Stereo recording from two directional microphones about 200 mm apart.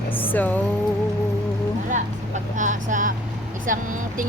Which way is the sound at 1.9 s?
40° right (ahead or behind).